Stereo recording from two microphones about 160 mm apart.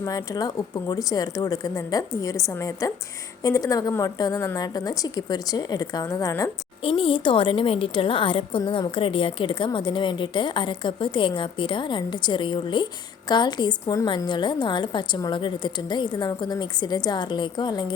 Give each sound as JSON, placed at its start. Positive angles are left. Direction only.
{"t": 0.0, "sound": "a woman's voice", "side_deg": 20}
{"t": 6.8, "sound": "a woman's voice", "side_deg": 35}